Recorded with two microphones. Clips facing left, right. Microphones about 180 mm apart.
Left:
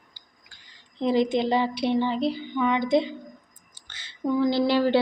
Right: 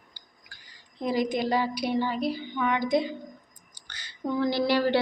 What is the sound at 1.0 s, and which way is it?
Speech, 25° left (ahead or behind).